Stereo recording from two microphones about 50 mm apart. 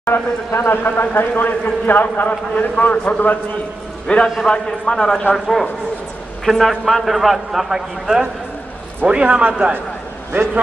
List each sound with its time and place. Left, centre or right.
0.0 s speech: left
0.7 s a man's voice: left; by 8.2 s centre
9.0 s a man's voice: right